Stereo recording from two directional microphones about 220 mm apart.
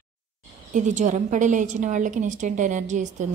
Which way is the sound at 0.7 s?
35° right (ahead or behind).